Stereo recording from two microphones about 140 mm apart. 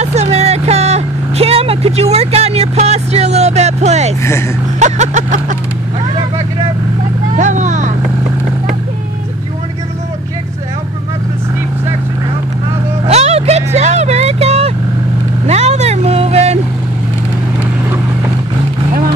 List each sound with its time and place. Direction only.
0.0 s vehicle: 50° right (ahead or behind)
4.2 s a sound: 20° left (ahead or behind)
4.7 s vehicle: 55° right (ahead or behind)
7.3 s vehicle: 60° right (ahead or behind)
13.0 s vehicle: 50° right (ahead or behind)